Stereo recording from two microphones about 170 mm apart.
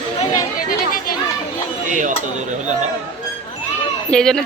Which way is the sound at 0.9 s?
55° left (ahead or behind).